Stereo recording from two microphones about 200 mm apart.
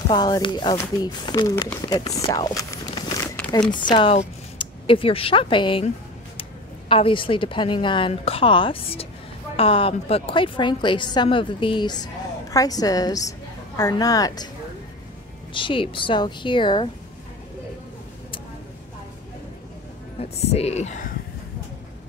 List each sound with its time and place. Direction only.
0.1 s a woman's voice: 20° left (ahead or behind)
2.2 s a sound: 20° left (ahead or behind)
3.8 s speech: 25° left (ahead or behind)
6.9 s a woman's voice: 25° left (ahead or behind)
15.5 s a woman's voice: 25° left (ahead or behind)
20.2 s a woman's voice: 30° left (ahead or behind)